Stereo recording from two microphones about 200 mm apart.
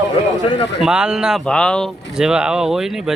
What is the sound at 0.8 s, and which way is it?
Speech, 5° right (ahead or behind).